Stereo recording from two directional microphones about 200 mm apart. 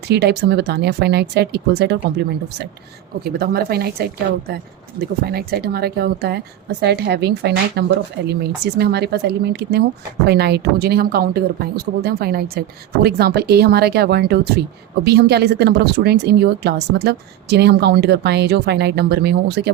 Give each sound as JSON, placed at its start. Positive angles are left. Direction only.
{"t": 0.1, "sound": "speech", "side_deg": -55}
{"t": 3.2, "sound": "speech", "side_deg": -50}